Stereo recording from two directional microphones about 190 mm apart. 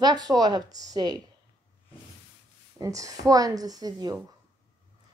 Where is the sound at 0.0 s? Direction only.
20° right (ahead or behind).